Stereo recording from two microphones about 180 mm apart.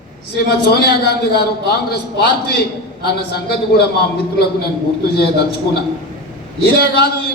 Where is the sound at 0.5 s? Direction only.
60° left (ahead or behind).